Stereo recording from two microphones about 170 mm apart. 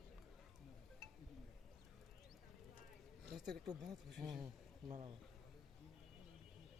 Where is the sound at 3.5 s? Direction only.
Centre (ahead or behind).